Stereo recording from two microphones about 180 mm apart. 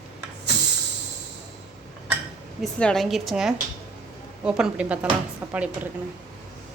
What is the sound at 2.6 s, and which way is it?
Speech, centre (ahead or behind).